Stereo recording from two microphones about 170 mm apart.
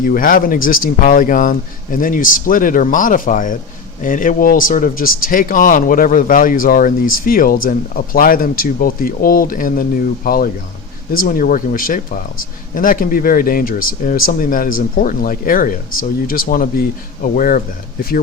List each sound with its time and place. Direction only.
0.0 s speech: 55° left (ahead or behind)